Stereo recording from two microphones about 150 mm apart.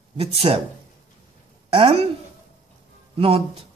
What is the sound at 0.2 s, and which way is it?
Speech, 40° right (ahead or behind).